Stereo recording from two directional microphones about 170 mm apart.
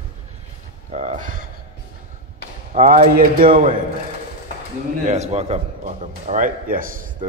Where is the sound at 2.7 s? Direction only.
55° right (ahead or behind).